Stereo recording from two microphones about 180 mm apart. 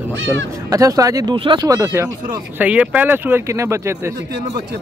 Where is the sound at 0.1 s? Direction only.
90° right.